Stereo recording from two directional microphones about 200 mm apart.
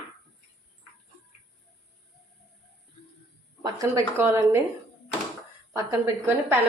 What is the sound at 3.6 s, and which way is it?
A woman's voice, 15° right (ahead or behind).